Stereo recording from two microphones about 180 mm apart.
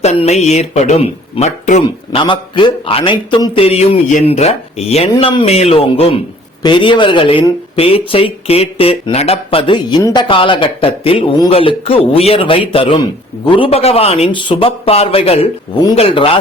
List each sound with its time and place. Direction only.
0.0 s speech: 35° left (ahead or behind)
2.1 s speech: 25° left (ahead or behind)